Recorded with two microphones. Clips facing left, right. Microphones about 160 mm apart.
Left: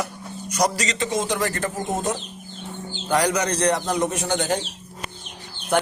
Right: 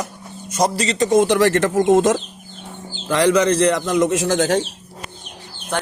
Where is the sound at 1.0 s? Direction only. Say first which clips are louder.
Right 11 dB; 55° right (ahead or behind); by 4.6 s 90° right.